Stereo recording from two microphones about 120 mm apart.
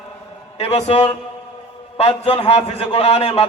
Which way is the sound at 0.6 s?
60° left (ahead or behind).